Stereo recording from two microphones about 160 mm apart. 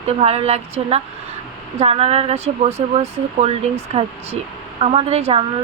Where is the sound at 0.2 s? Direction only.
40° right (ahead or behind).